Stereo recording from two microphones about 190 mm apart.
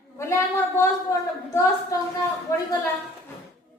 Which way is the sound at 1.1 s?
15° left (ahead or behind).